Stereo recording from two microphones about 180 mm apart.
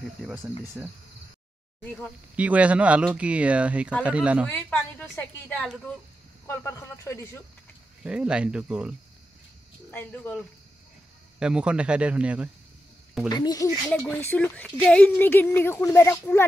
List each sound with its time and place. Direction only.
0.3 s speech: 10° right (ahead or behind)
2.3 s speech: 10° right (ahead or behind)
4.5 s speech: 10° left (ahead or behind)
8.0 s speech: 5° right (ahead or behind)
9.8 s speech: 10° left (ahead or behind)
11.3 s speech: 5° right (ahead or behind)
13.3 s speech: 20° left (ahead or behind)
13.8 s speech: 10° left (ahead or behind)